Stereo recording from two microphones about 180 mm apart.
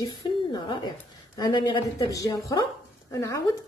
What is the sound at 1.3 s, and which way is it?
Speech, 25° left (ahead or behind).